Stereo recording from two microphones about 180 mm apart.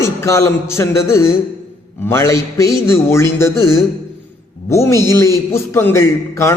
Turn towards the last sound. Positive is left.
turn(degrees=15)  # may be behind; listen again after turning